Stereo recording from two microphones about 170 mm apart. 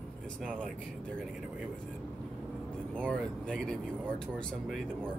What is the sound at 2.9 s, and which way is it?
Speech, 5° left (ahead or behind).